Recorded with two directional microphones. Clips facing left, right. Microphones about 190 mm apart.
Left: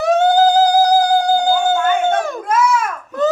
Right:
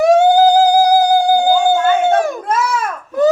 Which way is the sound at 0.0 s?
10° right (ahead or behind).